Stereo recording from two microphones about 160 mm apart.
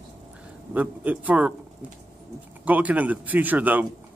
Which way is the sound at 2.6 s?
10° right (ahead or behind).